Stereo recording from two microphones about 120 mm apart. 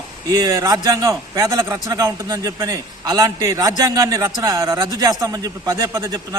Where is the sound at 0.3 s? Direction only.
30° right (ahead or behind).